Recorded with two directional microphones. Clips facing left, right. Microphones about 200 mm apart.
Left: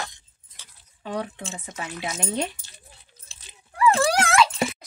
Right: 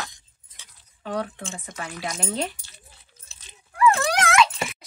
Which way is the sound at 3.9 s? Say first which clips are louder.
Left 2 dB; 30° left (ahead or behind).